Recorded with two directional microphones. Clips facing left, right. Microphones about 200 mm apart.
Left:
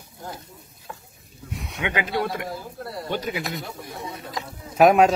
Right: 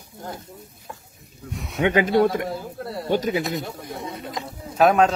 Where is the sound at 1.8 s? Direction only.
45° right (ahead or behind).